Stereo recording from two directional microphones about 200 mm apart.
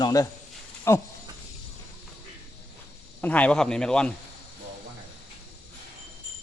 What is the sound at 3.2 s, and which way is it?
Speech, 5° left (ahead or behind).